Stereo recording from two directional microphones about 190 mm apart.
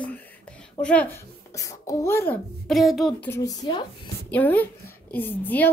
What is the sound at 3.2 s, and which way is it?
Speech, 15° left (ahead or behind).